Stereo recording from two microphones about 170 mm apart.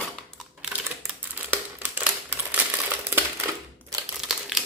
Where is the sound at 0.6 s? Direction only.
10° right (ahead or behind).